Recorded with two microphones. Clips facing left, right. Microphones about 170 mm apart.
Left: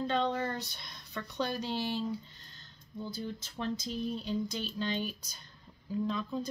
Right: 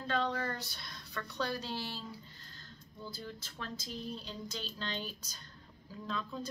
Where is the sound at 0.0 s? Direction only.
20° left (ahead or behind).